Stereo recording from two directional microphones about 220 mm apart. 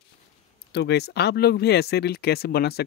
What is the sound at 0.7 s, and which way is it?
Speech, 50° left (ahead or behind).